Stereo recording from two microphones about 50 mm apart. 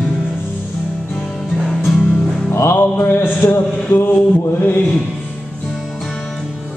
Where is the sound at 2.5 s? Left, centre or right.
Left.